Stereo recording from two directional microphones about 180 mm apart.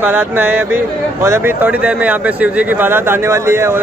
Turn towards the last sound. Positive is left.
turn(degrees=-15)  # may be behind; listen again after turning